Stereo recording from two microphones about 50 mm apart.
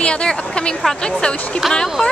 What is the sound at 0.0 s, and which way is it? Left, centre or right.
Speech, left.